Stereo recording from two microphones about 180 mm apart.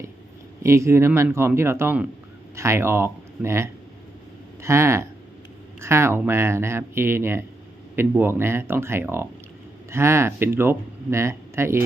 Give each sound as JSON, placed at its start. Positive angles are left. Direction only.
{"t": 0.6, "sound": "speech", "side_deg": -15}